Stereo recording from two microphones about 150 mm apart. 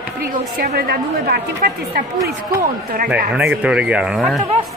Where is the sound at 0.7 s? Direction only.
85° right.